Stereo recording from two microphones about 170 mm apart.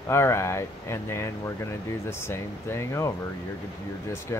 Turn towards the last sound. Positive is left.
turn(degrees=15)  # may be behind; listen again after turning